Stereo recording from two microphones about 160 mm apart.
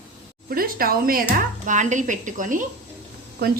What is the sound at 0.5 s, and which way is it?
Speech, 65° right (ahead or behind).